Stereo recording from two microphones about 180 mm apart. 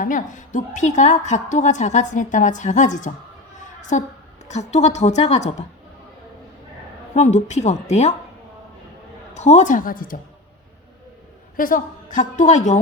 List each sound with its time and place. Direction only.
0.0 s a woman's voice: 45° left (ahead or behind)
3.6 s a sound: 45° left (ahead or behind)
4.4 s a woman's voice: 40° left (ahead or behind)
7.1 s a woman's voice: 40° left (ahead or behind)
9.3 s a woman's voice: 40° left (ahead or behind)
11.5 s a woman's voice: 50° left (ahead or behind)